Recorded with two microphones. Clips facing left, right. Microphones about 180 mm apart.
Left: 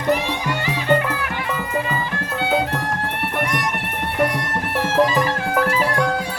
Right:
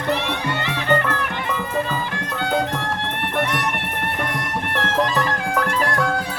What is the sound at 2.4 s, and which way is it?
Music, 5° left (ahead or behind).